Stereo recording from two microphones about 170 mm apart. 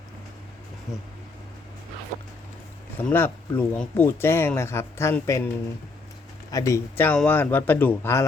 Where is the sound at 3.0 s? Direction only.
10° left (ahead or behind).